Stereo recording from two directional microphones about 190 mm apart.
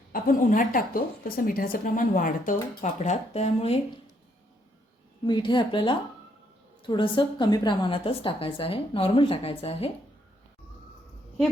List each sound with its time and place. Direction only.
0.1 s a woman's voice: 45° left (ahead or behind)
5.2 s a woman's voice: 25° left (ahead or behind)